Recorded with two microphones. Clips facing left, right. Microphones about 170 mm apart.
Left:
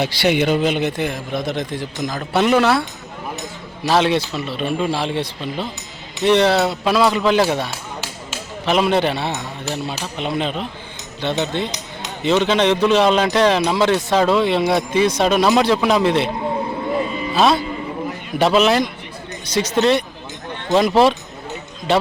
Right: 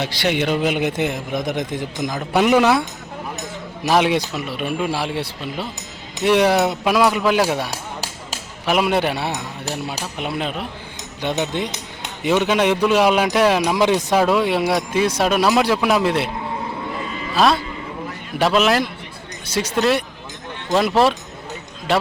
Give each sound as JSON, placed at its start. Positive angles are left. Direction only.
{"t": 0.0, "sound": "speech", "side_deg": 5}
{"t": 3.8, "sound": "speech", "side_deg": -15}
{"t": 7.7, "sound": "a sound", "side_deg": -40}
{"t": 8.6, "sound": "speech", "side_deg": -10}
{"t": 17.3, "sound": "speech", "side_deg": 0}